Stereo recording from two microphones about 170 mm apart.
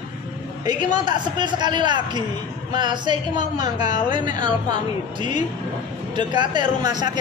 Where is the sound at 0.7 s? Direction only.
45° left (ahead or behind).